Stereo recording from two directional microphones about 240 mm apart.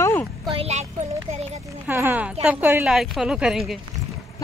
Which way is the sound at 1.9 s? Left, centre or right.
Centre.